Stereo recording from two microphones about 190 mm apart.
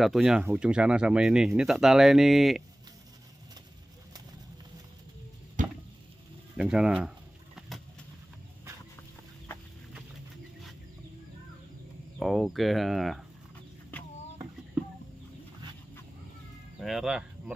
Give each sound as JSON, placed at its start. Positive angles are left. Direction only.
{"t": 0.0, "sound": "speech", "side_deg": 0}
{"t": 5.6, "sound": "a sound", "side_deg": -45}
{"t": 6.5, "sound": "speech", "side_deg": -5}
{"t": 12.2, "sound": "speech", "side_deg": 0}
{"t": 16.8, "sound": "speech", "side_deg": 0}